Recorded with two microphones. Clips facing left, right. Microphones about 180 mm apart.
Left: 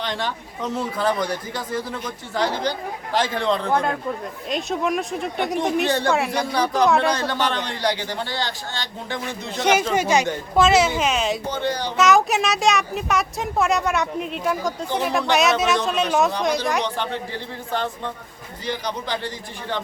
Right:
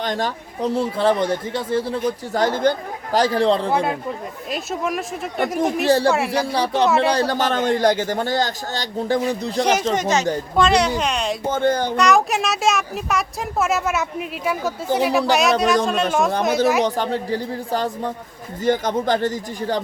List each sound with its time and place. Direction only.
0.0 s a man's voice: 45° right (ahead or behind)
3.7 s a man's voice: 5° right (ahead or behind)
6.5 s speech: 30° right (ahead or behind)
6.8 s speech: 5° right (ahead or behind)
7.1 s a man's voice: 40° right (ahead or behind)
9.6 s speech: 5° left (ahead or behind)
11.4 s a man's voice: 50° right (ahead or behind)
11.9 s speech: centre (ahead or behind)
16.8 s a man's voice: 40° right (ahead or behind)